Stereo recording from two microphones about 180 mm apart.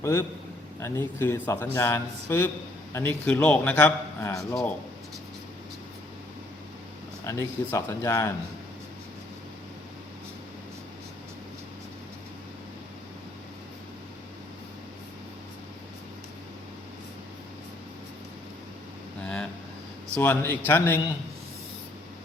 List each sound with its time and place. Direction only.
0.0 s a man's voice: 15° left (ahead or behind)
4.4 s speech: centre (ahead or behind)
7.3 s a man's voice: 15° left (ahead or behind)
19.2 s a sound: 5° left (ahead or behind)
20.1 s a man's voice: 10° left (ahead or behind)